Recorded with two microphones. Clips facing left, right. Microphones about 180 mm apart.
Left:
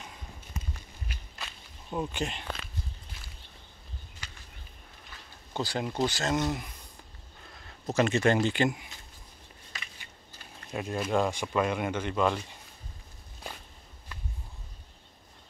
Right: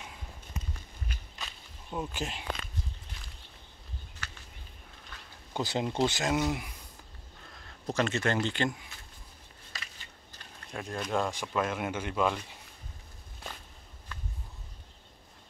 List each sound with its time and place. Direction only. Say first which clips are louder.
1.4 s walk: left 1 dB; centre (ahead or behind)
4.2 s a sound: right 4 dB; 15° left (ahead or behind)
5.5 s speech: right 1 dB; 20° right (ahead or behind)
6.2 s speech: even; 10° right (ahead or behind)
7.5 s a sound: left 3 dB; 5° left (ahead or behind)
8.1 s speech: left 5 dB; 15° left (ahead or behind)
10.7 s speech: left 4 dB; 5° left (ahead or behind)